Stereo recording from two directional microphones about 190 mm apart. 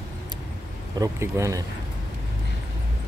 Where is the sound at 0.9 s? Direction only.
15° right (ahead or behind).